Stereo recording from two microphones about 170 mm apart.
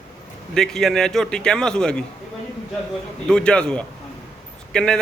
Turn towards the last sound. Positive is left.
turn(degrees=5)  # may be behind; listen again after turning